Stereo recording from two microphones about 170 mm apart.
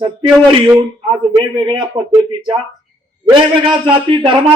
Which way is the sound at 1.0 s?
30° right (ahead or behind).